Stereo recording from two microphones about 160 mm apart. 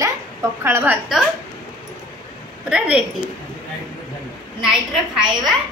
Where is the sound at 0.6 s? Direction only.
10° right (ahead or behind).